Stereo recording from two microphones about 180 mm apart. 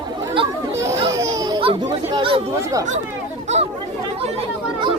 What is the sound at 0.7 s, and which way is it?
Chatter, 15° right (ahead or behind).